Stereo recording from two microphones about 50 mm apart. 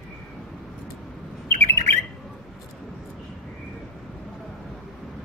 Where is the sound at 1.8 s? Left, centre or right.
Left.